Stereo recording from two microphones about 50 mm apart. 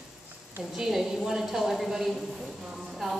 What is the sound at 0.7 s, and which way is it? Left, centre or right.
Speech, centre.